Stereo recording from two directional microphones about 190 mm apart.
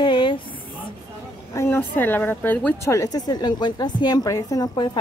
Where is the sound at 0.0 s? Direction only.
25° left (ahead or behind).